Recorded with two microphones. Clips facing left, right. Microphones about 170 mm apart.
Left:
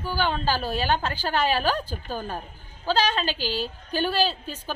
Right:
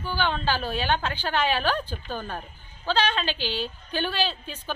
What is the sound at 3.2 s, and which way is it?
A woman's voice, 40° left (ahead or behind).